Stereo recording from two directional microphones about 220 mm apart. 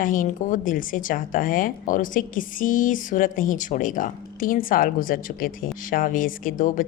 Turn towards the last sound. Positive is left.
turn(degrees=40)  # may be behind; listen again after turning